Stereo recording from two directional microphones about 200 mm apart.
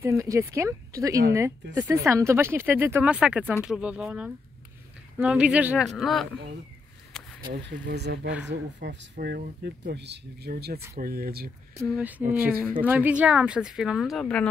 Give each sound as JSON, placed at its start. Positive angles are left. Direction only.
{"t": 0.0, "sound": "speech", "side_deg": -15}
{"t": 7.5, "sound": "speech", "side_deg": -55}
{"t": 11.9, "sound": "speech", "side_deg": -10}